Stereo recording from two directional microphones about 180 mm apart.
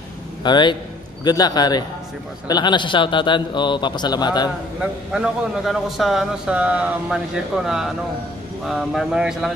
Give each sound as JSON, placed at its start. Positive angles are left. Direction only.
{"t": 0.4, "sound": "a man's voice", "side_deg": 25}
{"t": 5.1, "sound": "speech", "side_deg": 0}